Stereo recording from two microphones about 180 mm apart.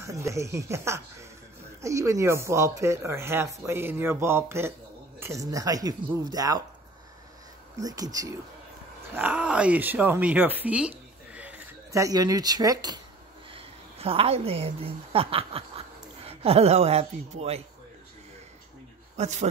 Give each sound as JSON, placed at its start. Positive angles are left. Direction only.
{"t": 0.0, "sound": "speech", "side_deg": -15}
{"t": 7.7, "sound": "speech", "side_deg": -20}
{"t": 9.1, "sound": "speech", "side_deg": -10}
{"t": 13.5, "sound": "a woman's voice", "side_deg": -30}
{"t": 19.1, "sound": "a man's voice", "side_deg": -40}